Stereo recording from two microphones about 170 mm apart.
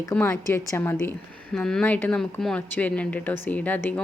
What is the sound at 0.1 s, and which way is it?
Speech, 15° left (ahead or behind).